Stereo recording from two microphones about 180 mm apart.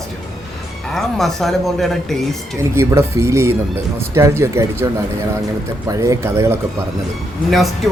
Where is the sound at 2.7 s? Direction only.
15° right (ahead or behind).